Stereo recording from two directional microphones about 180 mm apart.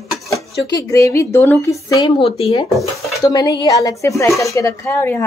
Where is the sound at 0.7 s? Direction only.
20° left (ahead or behind).